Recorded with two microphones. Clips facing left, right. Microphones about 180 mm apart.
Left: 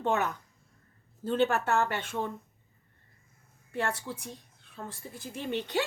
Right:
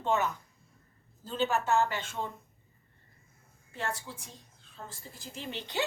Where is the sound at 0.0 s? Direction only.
60° left (ahead or behind).